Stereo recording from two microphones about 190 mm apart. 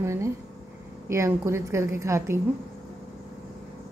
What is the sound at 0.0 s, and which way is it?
A woman's voice, 15° right (ahead or behind).